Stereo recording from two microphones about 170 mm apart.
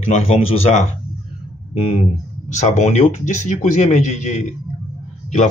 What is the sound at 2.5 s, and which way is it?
Speech, 45° left (ahead or behind).